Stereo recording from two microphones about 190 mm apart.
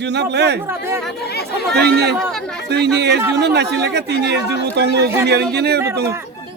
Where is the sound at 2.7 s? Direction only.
60° right (ahead or behind).